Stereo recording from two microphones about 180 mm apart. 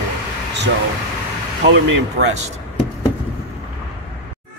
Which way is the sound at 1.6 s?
80° right.